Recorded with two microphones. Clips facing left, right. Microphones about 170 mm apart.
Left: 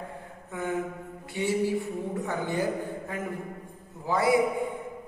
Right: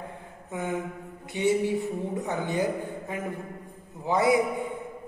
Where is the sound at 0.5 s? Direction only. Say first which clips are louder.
Right 1 dB; 20° right (ahead or behind).